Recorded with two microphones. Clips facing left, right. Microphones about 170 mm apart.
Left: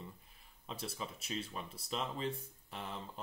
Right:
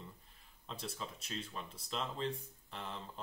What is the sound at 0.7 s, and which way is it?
Speech, 5° left (ahead or behind).